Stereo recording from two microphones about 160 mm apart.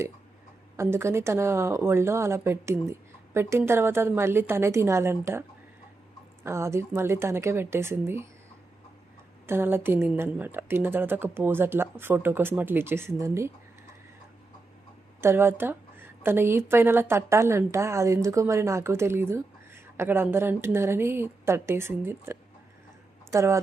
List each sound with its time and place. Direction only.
0.8 s a woman's voice: 15° right (ahead or behind)
9.5 s a woman's voice: 15° right (ahead or behind)
15.2 s a woman's voice: 15° right (ahead or behind)